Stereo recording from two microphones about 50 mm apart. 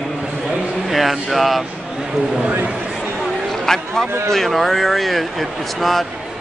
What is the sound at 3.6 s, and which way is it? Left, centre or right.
Speech, centre.